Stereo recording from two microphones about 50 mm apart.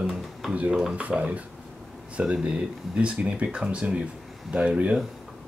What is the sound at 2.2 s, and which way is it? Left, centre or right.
Speech, right.